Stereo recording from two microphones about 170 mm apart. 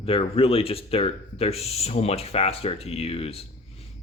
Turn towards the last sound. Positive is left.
turn(degrees=35)  # may be behind; listen again after turning